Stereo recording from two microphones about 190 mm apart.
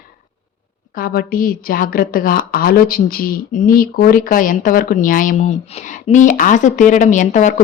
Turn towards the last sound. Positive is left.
turn(degrees=40)  # may be behind; listen again after turning